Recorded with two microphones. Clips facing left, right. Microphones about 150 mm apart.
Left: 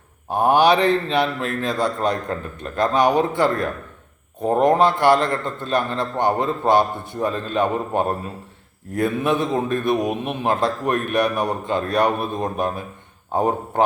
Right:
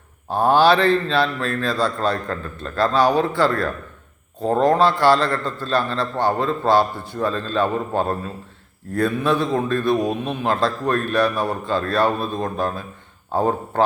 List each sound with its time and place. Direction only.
0.3 s a man's voice: 20° left (ahead or behind)